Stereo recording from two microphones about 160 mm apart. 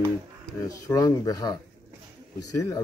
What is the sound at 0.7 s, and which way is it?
Speech, 20° left (ahead or behind).